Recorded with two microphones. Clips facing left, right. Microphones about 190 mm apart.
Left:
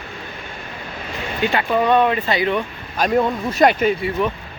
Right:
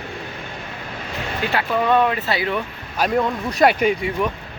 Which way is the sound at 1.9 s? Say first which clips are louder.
Left 1 dB; centre (ahead or behind).